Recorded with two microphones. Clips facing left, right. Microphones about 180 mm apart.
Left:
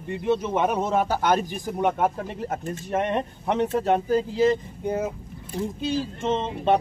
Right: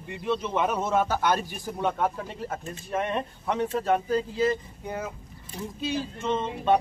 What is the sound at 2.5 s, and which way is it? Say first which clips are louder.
Speech: left 5 dB; 50° left (ahead or behind).